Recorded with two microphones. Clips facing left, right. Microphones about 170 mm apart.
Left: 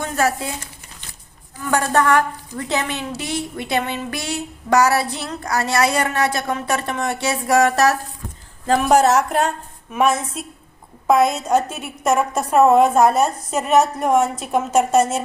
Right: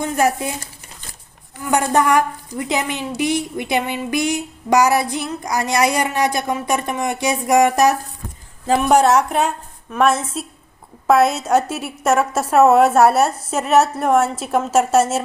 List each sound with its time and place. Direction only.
0.0 s a woman's voice: 15° right (ahead or behind)
1.7 s a woman's voice: 15° right (ahead or behind)